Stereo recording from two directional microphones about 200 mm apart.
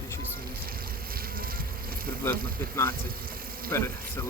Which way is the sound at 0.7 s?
50° right (ahead or behind).